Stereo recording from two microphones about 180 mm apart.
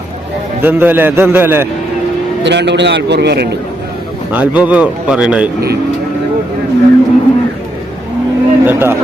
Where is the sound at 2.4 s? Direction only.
75° right (ahead or behind).